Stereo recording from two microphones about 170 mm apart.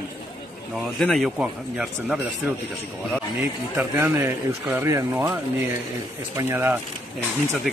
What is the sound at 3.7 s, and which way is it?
Speech, 10° right (ahead or behind).